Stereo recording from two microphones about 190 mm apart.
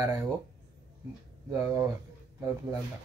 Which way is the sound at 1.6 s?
15° right (ahead or behind).